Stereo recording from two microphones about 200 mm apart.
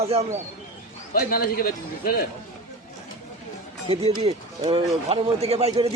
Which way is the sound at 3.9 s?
30° right (ahead or behind).